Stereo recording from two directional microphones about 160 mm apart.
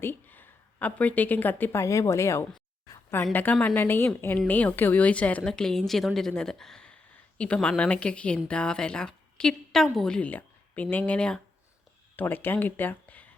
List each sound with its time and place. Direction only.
0.0 s speech: 10° left (ahead or behind)
2.8 s a sound: 20° left (ahead or behind)
3.3 s a woman's voice: 10° left (ahead or behind)